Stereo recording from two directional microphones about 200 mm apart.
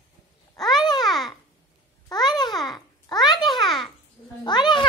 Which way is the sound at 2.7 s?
20° left (ahead or behind).